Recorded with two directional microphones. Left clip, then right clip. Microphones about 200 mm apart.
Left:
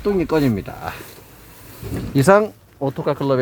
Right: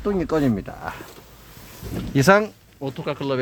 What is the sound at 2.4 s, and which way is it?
Speech, 25° left (ahead or behind).